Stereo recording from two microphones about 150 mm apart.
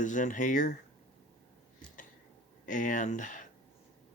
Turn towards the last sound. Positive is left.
turn(degrees=60)  # may be behind; listen again after turning